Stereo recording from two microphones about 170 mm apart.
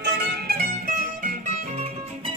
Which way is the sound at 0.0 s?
75° right (ahead or behind).